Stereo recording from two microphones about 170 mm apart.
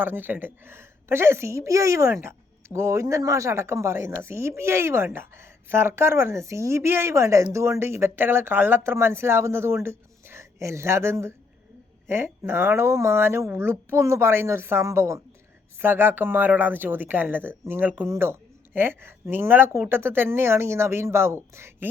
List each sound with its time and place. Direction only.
0.0 s speech: 10° right (ahead or behind)